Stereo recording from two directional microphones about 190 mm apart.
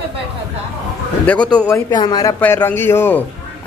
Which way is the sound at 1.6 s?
20° left (ahead or behind).